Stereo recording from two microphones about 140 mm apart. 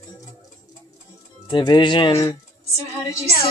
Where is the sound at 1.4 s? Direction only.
35° left (ahead or behind).